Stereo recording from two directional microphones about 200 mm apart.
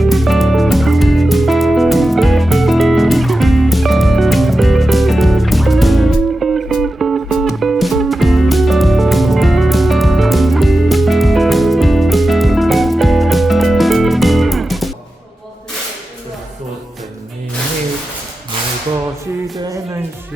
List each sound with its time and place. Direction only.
0.0 s music: centre (ahead or behind)
19.5 s music: 20° right (ahead or behind)